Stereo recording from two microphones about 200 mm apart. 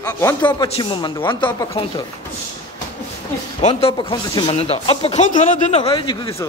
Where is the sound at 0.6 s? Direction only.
25° left (ahead or behind).